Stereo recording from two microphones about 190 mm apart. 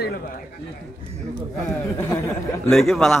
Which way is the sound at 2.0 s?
15° left (ahead or behind).